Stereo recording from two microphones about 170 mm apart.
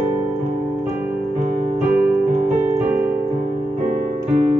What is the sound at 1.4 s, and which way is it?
Music, 50° right (ahead or behind).